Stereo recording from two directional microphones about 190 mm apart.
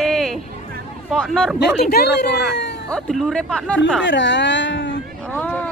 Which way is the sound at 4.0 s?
70° left (ahead or behind).